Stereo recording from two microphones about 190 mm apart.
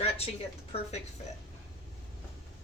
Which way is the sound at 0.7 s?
30° left (ahead or behind).